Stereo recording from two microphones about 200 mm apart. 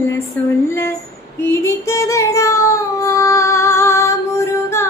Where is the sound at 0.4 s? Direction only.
5° left (ahead or behind).